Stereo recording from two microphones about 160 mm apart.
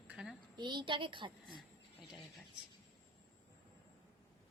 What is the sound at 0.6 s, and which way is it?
Speech, 30° right (ahead or behind).